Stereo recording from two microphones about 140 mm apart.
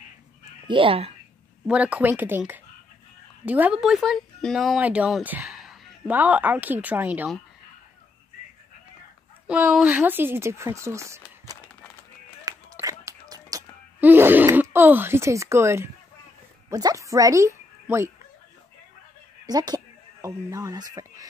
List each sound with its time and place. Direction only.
0.7 s speech: 40° right (ahead or behind)
1.7 s a woman's voice: 10° right (ahead or behind)
9.5 s speech: 5° right (ahead or behind)
12.5 s a sound: 25° right (ahead or behind)
12.8 s whispering: 25° right (ahead or behind)
13.9 s speech: 15° right (ahead or behind)
19.4 s speech: 30° right (ahead or behind)